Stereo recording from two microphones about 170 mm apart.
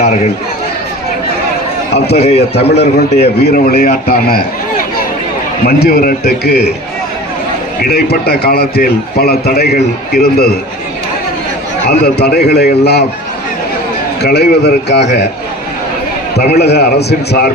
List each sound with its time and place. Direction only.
2.1 s a man's voice: 40° left (ahead or behind)
2.6 s a man's voice: 75° left (ahead or behind)
3.4 s a man's voice: 65° left (ahead or behind)
5.6 s a man's voice: 65° left (ahead or behind)
7.8 s a man's voice: 70° left (ahead or behind)
11.9 s a man's voice: 75° left (ahead or behind)
14.2 s a man's voice: 75° left (ahead or behind)
16.5 s a man's voice: 75° left (ahead or behind)